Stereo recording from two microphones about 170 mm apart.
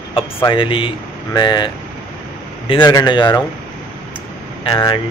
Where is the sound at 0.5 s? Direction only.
30° left (ahead or behind).